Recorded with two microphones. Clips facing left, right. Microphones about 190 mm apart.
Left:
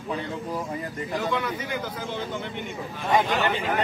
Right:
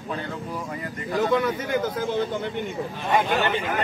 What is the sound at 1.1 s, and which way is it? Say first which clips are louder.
Speech: right 6 dB; 45° right (ahead or behind).